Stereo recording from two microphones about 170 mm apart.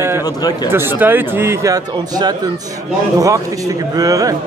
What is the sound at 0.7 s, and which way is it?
A man's voice, 15° right (ahead or behind).